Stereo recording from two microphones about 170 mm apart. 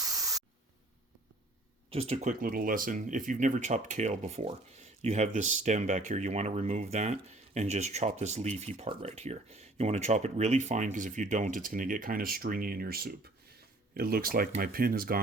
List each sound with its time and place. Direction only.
0.0 s spray: 20° right (ahead or behind)
1.9 s speech: 35° right (ahead or behind)
2.4 s speech: 55° right (ahead or behind)